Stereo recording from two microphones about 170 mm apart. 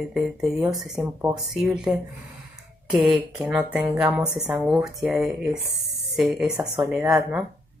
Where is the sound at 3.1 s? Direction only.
5° right (ahead or behind).